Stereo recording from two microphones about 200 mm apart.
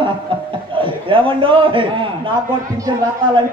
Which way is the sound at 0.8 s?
25° right (ahead or behind).